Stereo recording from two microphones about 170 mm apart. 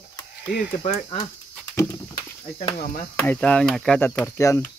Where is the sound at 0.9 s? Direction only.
25° left (ahead or behind).